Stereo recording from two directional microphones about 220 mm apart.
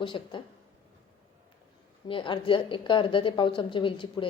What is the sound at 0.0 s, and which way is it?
Speech, 20° left (ahead or behind).